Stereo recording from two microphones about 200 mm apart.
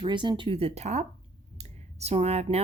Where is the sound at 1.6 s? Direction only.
30° right (ahead or behind).